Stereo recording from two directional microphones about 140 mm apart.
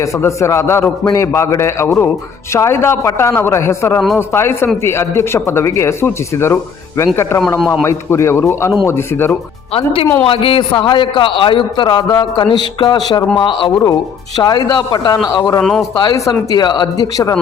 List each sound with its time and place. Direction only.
0.0 s a man's voice: 20° left (ahead or behind)
9.7 s a man's voice: 40° left (ahead or behind); by 17.3 s 25° left (ahead or behind)